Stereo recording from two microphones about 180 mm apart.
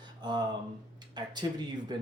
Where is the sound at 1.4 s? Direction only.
20° right (ahead or behind).